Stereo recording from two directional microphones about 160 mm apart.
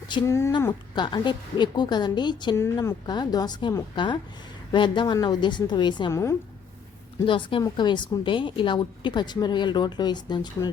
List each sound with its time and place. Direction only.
0.3 s a woman's voice: 15° left (ahead or behind)
7.3 s a woman's voice: 30° left (ahead or behind)